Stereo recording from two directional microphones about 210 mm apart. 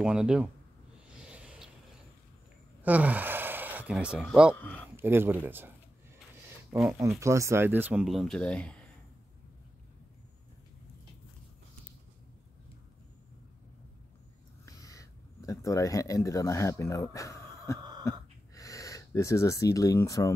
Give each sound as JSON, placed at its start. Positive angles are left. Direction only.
{"t": 0.0, "sound": "speech", "side_deg": -5}
{"t": 1.3, "sound": "vehicle", "side_deg": -5}
{"t": 2.8, "sound": "speech", "side_deg": -5}
{"t": 4.9, "sound": "speech", "side_deg": -10}
{"t": 6.7, "sound": "speech", "side_deg": -10}
{"t": 14.7, "sound": "speech", "side_deg": 15}
{"t": 18.1, "sound": "a sound", "side_deg": 15}
{"t": 18.5, "sound": "speech", "side_deg": 15}